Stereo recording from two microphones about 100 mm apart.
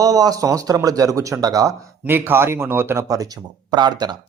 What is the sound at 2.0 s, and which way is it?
Speech, 20° right (ahead or behind).